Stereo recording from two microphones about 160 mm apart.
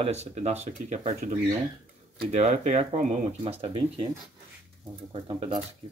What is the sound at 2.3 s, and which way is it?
Speech, 45° right (ahead or behind).